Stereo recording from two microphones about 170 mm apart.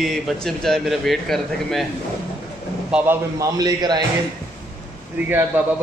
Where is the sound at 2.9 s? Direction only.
15° right (ahead or behind).